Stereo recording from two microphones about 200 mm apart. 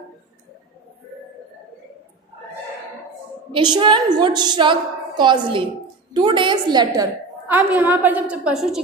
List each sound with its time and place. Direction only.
3.5 s a woman's voice: 25° right (ahead or behind)
7.4 s a woman's voice: 10° right (ahead or behind)